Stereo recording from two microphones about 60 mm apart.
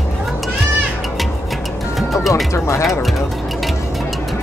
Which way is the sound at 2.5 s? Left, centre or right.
Left.